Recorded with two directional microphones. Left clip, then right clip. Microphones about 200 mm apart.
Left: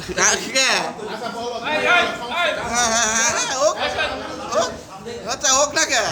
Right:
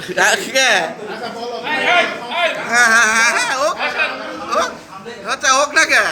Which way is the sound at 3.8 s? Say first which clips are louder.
Right 4 dB; 15° left (ahead or behind).